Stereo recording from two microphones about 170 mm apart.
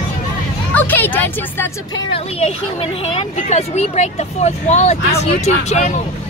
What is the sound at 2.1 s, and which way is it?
Speech, 35° left (ahead or behind).